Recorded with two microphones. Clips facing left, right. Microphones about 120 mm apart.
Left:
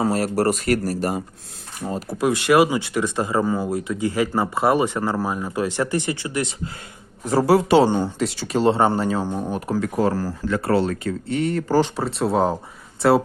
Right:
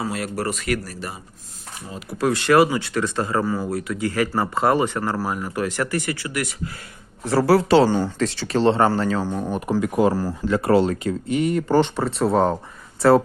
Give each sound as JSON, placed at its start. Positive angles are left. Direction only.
{"t": 0.0, "sound": "speech", "side_deg": 40}
{"t": 2.1, "sound": "speech", "side_deg": 15}
{"t": 9.5, "sound": "speech", "side_deg": 0}
{"t": 9.8, "sound": "speech", "side_deg": -10}
{"t": 11.3, "sound": "speech", "side_deg": -10}
{"t": 11.7, "sound": "speech", "side_deg": 5}